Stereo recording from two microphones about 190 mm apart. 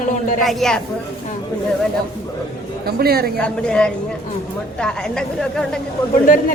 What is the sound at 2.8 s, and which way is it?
Speech, 55° right (ahead or behind).